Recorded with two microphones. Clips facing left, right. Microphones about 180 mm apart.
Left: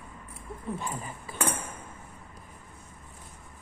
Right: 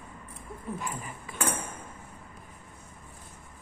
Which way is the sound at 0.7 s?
30° left (ahead or behind).